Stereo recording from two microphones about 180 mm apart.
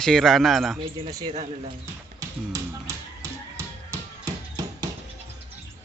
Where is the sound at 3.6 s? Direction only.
15° right (ahead or behind).